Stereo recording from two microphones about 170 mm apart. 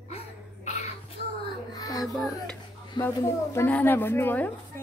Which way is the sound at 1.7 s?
20° left (ahead or behind).